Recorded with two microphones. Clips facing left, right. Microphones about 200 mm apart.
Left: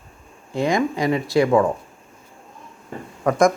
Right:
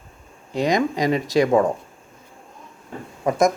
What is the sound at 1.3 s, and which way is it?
Speech, 40° right (ahead or behind).